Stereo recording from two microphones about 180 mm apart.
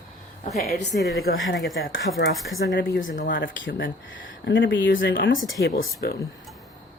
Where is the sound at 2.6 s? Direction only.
70° left (ahead or behind).